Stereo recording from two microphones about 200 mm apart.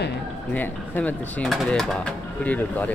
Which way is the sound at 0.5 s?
10° left (ahead or behind).